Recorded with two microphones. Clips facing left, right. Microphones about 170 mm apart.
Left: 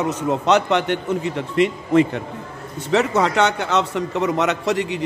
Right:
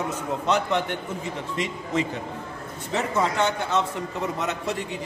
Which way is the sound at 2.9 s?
80° left.